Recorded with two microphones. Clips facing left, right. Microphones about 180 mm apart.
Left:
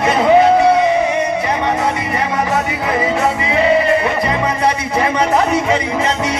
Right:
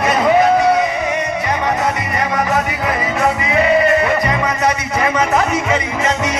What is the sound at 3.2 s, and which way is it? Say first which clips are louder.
Music: even; 30° left (ahead or behind).